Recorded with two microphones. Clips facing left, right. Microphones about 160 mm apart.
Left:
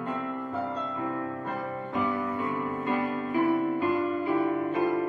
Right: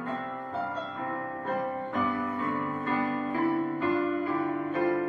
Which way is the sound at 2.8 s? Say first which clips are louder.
Even; 15° left (ahead or behind).